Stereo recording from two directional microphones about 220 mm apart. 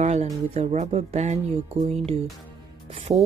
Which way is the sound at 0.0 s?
30° right (ahead or behind).